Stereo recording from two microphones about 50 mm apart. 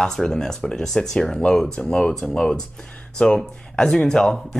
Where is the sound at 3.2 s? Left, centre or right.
Left.